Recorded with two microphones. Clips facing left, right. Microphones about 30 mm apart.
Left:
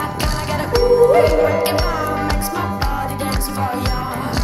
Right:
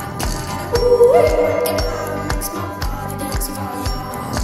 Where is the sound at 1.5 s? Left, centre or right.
Left.